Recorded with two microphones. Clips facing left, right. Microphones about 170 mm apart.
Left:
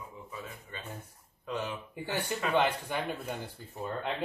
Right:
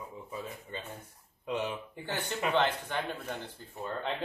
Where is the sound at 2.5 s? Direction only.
10° left (ahead or behind).